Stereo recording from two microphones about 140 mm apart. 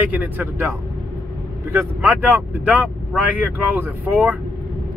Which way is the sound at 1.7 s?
15° right (ahead or behind).